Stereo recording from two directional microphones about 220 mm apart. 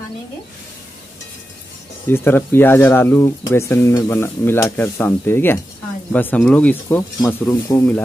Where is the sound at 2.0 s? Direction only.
10° left (ahead or behind).